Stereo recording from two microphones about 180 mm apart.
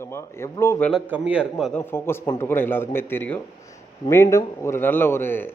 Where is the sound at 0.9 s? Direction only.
Centre (ahead or behind).